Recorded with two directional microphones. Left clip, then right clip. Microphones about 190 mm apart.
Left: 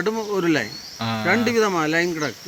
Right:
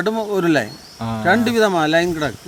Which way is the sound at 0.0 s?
30° right (ahead or behind).